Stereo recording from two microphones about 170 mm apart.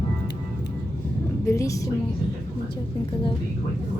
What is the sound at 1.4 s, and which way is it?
Speech, 20° left (ahead or behind).